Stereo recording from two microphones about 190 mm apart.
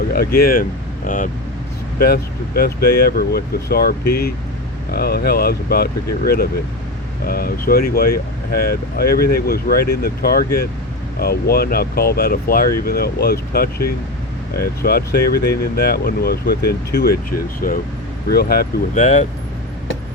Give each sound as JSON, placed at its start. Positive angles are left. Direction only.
{"t": 0.1, "sound": "speech", "side_deg": 50}
{"t": 18.3, "sound": "speech", "side_deg": 55}